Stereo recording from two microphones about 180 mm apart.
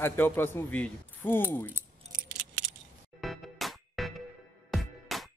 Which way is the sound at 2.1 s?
50° right (ahead or behind).